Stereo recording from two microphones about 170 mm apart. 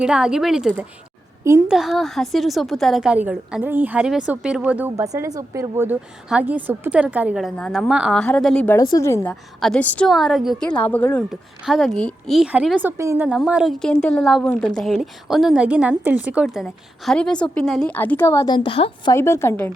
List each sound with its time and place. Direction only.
0.0 s a woman's voice: 5° right (ahead or behind)
8.7 s a woman's voice: 20° left (ahead or behind)
9.3 s a woman's voice: centre (ahead or behind)
11.3 s a woman's voice: centre (ahead or behind); by 13.2 s 15° right (ahead or behind)
13.2 s a woman's voice: 5° right (ahead or behind); by 19.1 s 30° left (ahead or behind)
19.1 s a woman's voice: 15° left (ahead or behind)